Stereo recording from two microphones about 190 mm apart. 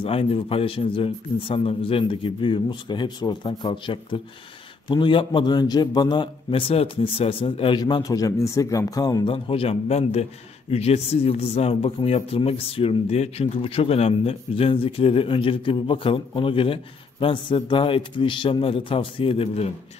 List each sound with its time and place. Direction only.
0.0 s speech: 30° left (ahead or behind)